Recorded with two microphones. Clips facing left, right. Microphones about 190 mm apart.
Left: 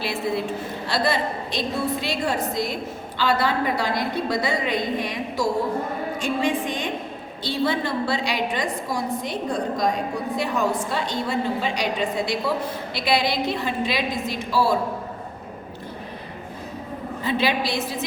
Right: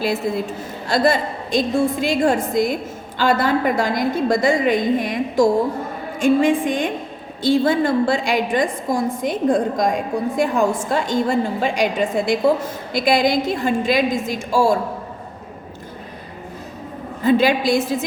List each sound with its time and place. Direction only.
0.0 s a woman's voice: 45° right (ahead or behind)
17.2 s a woman's voice: 45° right (ahead or behind)